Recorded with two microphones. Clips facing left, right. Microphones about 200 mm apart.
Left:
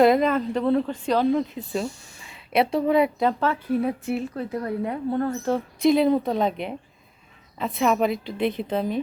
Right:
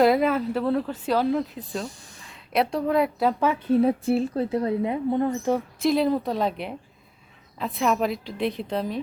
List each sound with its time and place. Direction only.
0.0 s a woman's voice: 5° right (ahead or behind)
3.7 s a woman's voice: 30° right (ahead or behind); by 5.6 s 15° right (ahead or behind)
5.8 s a woman's voice: centre (ahead or behind)